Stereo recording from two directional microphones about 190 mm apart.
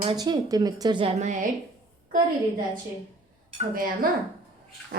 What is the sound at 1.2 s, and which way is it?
Speech, 40° right (ahead or behind).